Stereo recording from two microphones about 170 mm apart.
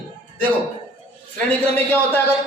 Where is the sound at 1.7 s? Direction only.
10° left (ahead or behind).